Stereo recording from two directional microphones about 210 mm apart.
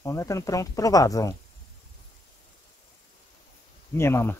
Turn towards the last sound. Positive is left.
turn(degrees=10)  # may be behind; listen again after turning